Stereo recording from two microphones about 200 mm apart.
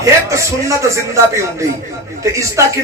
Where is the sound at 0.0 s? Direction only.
15° right (ahead or behind).